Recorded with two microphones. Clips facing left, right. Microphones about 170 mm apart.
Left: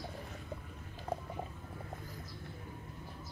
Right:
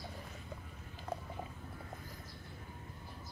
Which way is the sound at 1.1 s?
30° left (ahead or behind).